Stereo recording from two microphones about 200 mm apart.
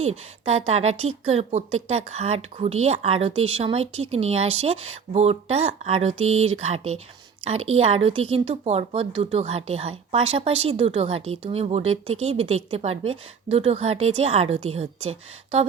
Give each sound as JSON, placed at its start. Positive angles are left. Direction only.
{"t": 0.0, "sound": "a woman's voice", "side_deg": -30}